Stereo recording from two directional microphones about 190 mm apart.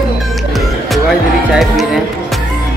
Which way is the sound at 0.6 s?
Centre (ahead or behind).